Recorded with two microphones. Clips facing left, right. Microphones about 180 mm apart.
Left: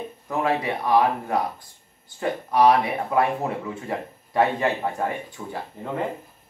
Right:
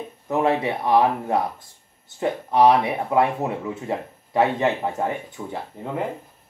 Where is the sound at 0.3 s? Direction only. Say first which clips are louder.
Right 3 dB; 25° right (ahead or behind).